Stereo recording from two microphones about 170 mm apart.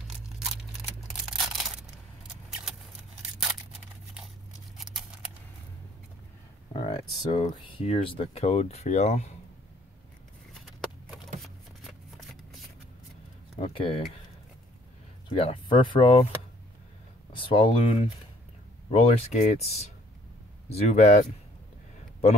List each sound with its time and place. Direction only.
1.0 s a sound: centre (ahead or behind)
4.7 s scissors: 5° right (ahead or behind)
6.7 s a sound: 25° left (ahead or behind)
7.6 s speech: 35° left (ahead or behind)
10.5 s a sound: centre (ahead or behind)
11.4 s shuffling cards: centre (ahead or behind)
13.6 s speech: 30° left (ahead or behind)
15.2 s speech: 30° left (ahead or behind)
17.3 s speech: 30° left (ahead or behind)